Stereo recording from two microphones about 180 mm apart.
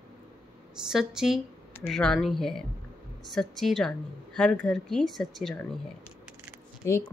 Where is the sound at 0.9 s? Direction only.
5° right (ahead or behind).